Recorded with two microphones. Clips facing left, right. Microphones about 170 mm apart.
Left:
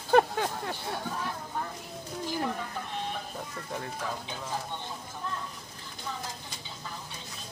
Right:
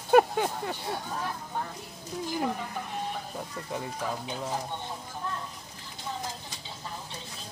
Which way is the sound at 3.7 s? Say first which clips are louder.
Right 2 dB; 10° right (ahead or behind).